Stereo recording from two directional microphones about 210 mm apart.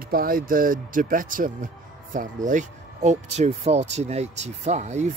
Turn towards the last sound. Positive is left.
turn(degrees=-35)  # may be behind; listen again after turning